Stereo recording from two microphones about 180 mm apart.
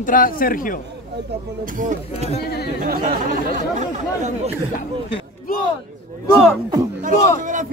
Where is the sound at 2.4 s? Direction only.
65° left (ahead or behind).